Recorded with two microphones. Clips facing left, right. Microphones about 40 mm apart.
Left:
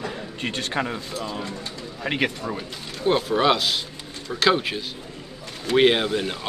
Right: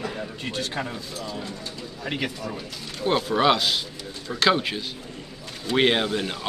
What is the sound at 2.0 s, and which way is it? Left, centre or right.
Speech, left.